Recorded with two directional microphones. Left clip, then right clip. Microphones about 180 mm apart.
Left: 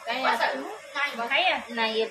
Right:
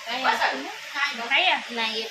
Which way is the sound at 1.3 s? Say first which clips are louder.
Right 3 dB; 60° left (ahead or behind).